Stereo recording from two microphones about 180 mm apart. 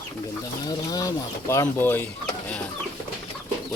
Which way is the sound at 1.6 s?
10° left (ahead or behind).